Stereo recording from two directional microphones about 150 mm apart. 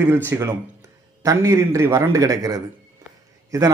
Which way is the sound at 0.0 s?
15° right (ahead or behind).